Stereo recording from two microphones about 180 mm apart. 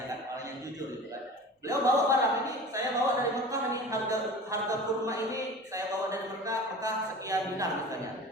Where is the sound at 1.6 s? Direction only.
20° right (ahead or behind).